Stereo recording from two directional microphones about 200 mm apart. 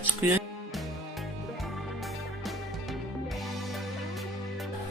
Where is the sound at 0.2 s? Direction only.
10° right (ahead or behind).